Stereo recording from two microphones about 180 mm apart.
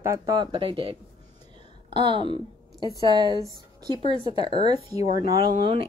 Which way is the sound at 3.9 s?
25° left (ahead or behind).